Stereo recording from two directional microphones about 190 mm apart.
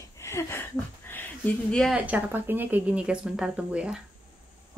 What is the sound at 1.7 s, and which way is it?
A woman's voice, centre (ahead or behind).